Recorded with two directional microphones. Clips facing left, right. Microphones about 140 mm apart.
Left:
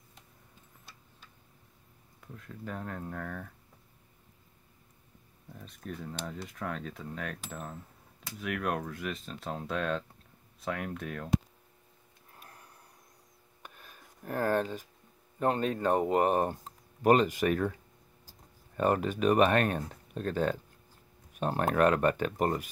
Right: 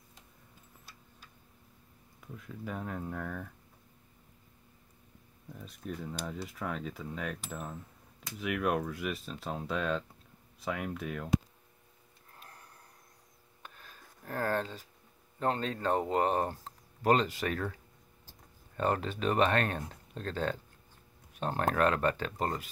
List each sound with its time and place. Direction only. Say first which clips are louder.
2.1 s speech: right 1 dB; 5° right (ahead or behind)
5.6 s speech: right 1 dB; 5° right (ahead or behind)
12.4 s a sound: even; 10° left (ahead or behind)
15.3 s speech: left 3 dB; 20° left (ahead or behind)
18.8 s speech: left 4 dB; 15° left (ahead or behind)